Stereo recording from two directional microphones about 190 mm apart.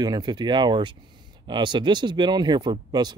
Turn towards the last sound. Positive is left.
turn(degrees=-25)  # may be behind; listen again after turning